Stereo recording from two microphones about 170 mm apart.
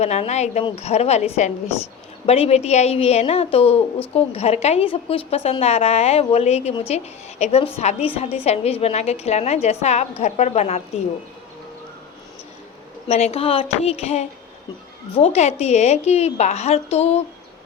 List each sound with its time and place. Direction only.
0.0 s a woman's voice: 40° left (ahead or behind)
13.1 s a woman's voice: 40° left (ahead or behind)